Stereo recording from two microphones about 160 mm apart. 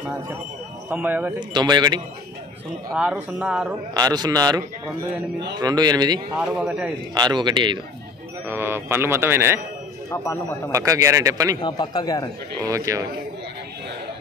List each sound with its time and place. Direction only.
0.8 s a man's voice: 10° right (ahead or behind)
1.5 s speech: 25° right (ahead or behind)
2.9 s a man's voice: 5° right (ahead or behind)
3.9 s speech: 25° right (ahead or behind)
6.3 s speech: 5° right (ahead or behind)
7.2 s speech: 25° right (ahead or behind)
8.5 s a man's voice: 15° right (ahead or behind)
10.1 s speech: 20° left (ahead or behind)
10.7 s speech: 20° right (ahead or behind)
11.6 s speech: 30° left (ahead or behind)
12.6 s speech: 20° right (ahead or behind)